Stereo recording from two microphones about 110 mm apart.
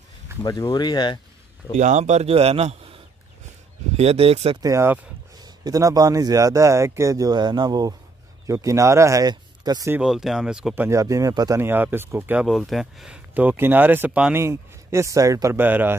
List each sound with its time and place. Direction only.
0.4 s speech: 35° left (ahead or behind)
1.8 s a man's voice: 90° right; by 4.6 s 60° right (ahead or behind)
4.6 s speech: 30° right (ahead or behind)
9.3 s a sound: 40° right (ahead or behind)
10.0 s speech: 5° right (ahead or behind)
10.7 s speech: 25° right (ahead or behind)
11.6 s speech: 20° right (ahead or behind)
12.4 s speech: centre (ahead or behind)
14.4 s speech: 25° right (ahead or behind)
15.5 s speech: 15° right (ahead or behind)